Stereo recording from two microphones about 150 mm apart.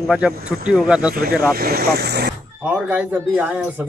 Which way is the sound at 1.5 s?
90° right.